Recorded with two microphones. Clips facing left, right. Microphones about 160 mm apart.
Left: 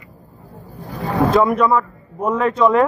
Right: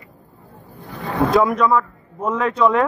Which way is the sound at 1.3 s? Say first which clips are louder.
Even; 5° left (ahead or behind).